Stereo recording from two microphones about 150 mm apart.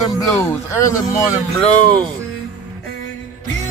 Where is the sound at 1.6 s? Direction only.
5° left (ahead or behind).